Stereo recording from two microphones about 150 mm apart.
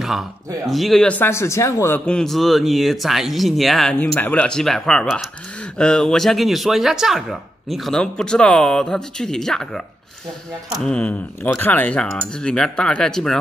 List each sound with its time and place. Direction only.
0.7 s speech: centre (ahead or behind); by 2.0 s 20° left (ahead or behind)
2.0 s speech: 5° left (ahead or behind)
10.9 s speech: 10° left (ahead or behind)